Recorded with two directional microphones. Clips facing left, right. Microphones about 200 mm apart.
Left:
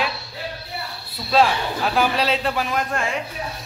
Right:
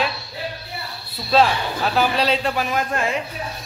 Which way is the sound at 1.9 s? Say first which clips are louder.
Right 1 dB; 5° left (ahead or behind).